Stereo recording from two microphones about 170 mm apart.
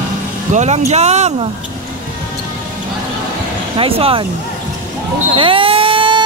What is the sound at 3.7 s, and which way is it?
Speech, 35° right (ahead or behind).